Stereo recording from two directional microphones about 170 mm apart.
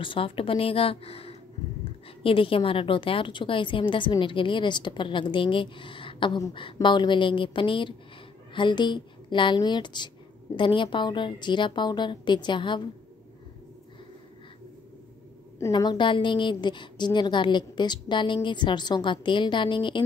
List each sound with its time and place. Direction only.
0.0 s a woman's voice: 30° left (ahead or behind)
15.6 s a woman's voice: 25° left (ahead or behind)